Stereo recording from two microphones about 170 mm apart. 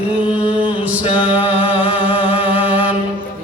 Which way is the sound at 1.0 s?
30° left (ahead or behind).